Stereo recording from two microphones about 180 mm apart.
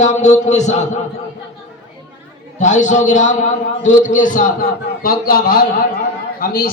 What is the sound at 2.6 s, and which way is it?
A man's voice, 40° left (ahead or behind).